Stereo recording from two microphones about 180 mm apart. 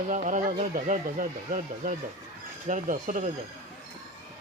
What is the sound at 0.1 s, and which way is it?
Speech, 45° right (ahead or behind).